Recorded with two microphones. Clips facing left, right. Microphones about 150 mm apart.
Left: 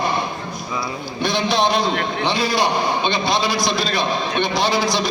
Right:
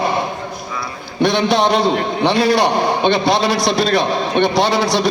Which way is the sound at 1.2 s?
70° right (ahead or behind).